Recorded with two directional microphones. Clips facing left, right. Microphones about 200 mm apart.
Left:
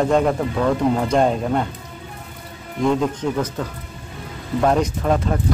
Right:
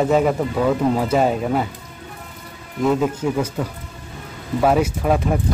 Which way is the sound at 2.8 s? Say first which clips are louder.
Right 1 dB; 5° right (ahead or behind).